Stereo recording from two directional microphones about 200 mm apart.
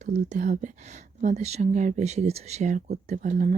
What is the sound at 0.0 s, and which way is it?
Speech, 40° right (ahead or behind).